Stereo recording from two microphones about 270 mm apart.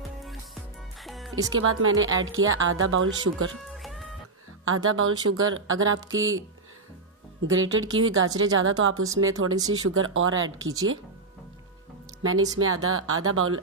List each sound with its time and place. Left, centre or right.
0.2 s music: centre
1.5 s speech: right
3.7 s music: centre
4.6 s speech: right
7.4 s speech: right
10.6 s speech: centre
12.2 s speech: right